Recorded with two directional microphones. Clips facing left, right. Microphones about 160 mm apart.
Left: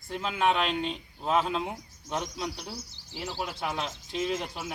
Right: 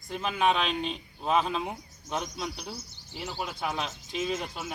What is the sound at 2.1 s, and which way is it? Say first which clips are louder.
Speech: left 1 dB; 15° right (ahead or behind).